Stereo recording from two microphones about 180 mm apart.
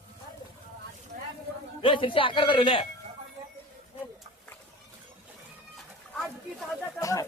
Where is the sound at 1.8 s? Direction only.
30° left (ahead or behind).